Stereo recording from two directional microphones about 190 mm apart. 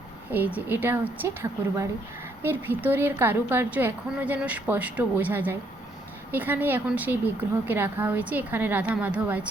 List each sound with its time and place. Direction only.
0.3 s a woman's voice: 10° right (ahead or behind)